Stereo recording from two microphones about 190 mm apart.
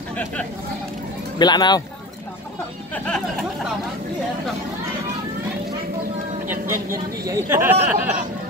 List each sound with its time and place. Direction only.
1.4 s speech: 20° left (ahead or behind)
6.4 s speech: 10° right (ahead or behind)